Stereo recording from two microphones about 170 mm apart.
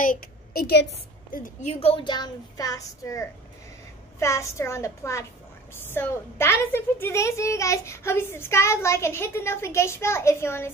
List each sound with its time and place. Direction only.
0.0 s a woman's voice: 60° left (ahead or behind)
1.3 s a woman's voice: 50° left (ahead or behind); by 10.7 s 15° left (ahead or behind)